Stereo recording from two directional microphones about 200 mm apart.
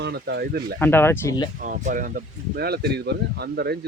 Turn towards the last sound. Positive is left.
turn(degrees=-55)  # may be behind; listen again after turning